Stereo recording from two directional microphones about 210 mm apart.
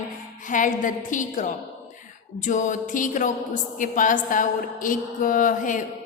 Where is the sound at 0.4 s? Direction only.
40° left (ahead or behind).